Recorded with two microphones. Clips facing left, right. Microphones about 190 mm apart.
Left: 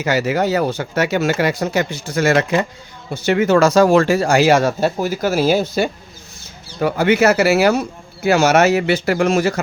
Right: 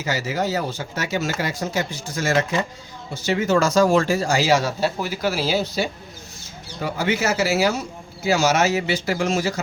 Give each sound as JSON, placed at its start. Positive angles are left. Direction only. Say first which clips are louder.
{"t": 0.0, "sound": "speech", "louder": "left 7 dB", "side_deg": 65}